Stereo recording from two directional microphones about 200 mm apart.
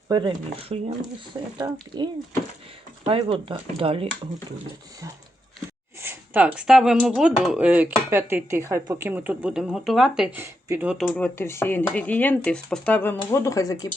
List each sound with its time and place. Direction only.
0.1 s speech: 25° right (ahead or behind)
1.6 s speech: 15° right (ahead or behind)
3.0 s speech: 25° right (ahead or behind)
6.0 s speech: 10° right (ahead or behind)
10.9 s speech: centre (ahead or behind)
11.3 s speech: 10° left (ahead or behind)